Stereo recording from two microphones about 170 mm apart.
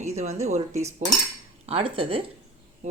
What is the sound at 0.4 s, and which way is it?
Speech, 40° right (ahead or behind).